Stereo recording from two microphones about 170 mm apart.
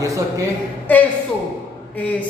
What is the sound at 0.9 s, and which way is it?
A woman's voice, 10° left (ahead or behind).